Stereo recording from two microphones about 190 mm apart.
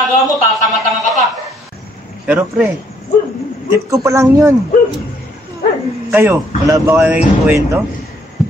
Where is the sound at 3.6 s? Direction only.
15° right (ahead or behind).